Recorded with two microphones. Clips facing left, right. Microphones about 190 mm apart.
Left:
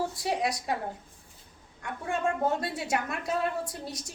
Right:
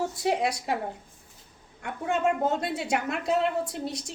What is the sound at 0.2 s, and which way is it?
Speech, 25° right (ahead or behind).